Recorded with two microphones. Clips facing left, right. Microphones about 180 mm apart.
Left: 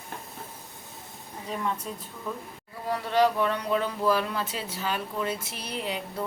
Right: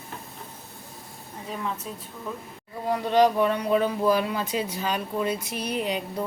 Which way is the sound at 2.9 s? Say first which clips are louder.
Right 3 dB; 20° right (ahead or behind).